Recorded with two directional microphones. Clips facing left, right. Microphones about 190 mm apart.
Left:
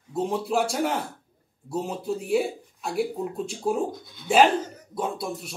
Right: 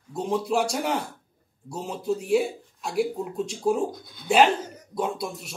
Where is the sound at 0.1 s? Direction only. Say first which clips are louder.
Even; 5° left (ahead or behind).